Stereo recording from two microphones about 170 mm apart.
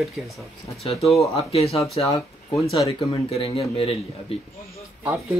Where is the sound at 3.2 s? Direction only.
35° left (ahead or behind).